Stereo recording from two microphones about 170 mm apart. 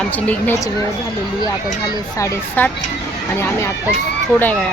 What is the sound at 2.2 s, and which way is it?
Speech, 10° left (ahead or behind).